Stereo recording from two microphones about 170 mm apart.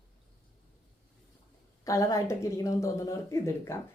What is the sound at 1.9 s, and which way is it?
Speech, 20° left (ahead or behind).